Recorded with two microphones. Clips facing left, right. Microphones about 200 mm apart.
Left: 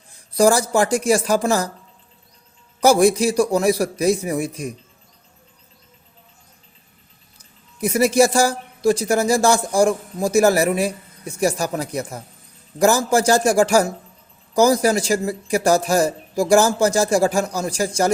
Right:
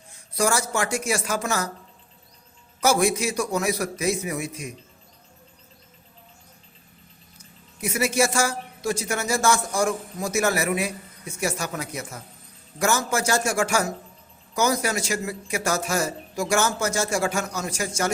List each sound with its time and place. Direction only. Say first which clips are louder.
0.1 s speech: left 8 dB; 35° left (ahead or behind)
2.8 s speech: left 7 dB; 35° left (ahead or behind)
7.3 s speech: left 8 dB; 35° left (ahead or behind)